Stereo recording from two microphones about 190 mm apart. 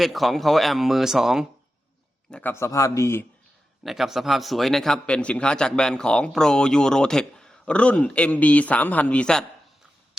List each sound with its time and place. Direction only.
0.0 s a man's voice: centre (ahead or behind)
2.3 s speech: 10° left (ahead or behind)
3.8 s a man's voice: centre (ahead or behind)